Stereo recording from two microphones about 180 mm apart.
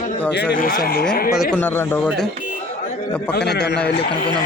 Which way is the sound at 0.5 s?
50° left (ahead or behind).